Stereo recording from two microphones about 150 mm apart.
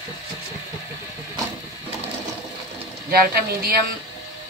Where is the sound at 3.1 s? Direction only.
80° right.